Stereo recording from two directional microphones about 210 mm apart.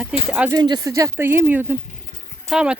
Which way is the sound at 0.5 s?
20° right (ahead or behind).